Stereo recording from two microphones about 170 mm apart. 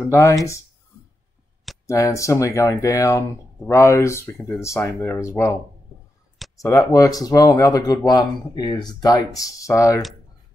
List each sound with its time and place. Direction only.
0.1 s speech: 20° left (ahead or behind)
1.9 s speech: 20° left (ahead or behind)